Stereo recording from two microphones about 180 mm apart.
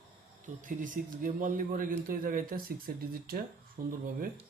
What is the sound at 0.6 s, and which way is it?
A man's voice, 45° right (ahead or behind).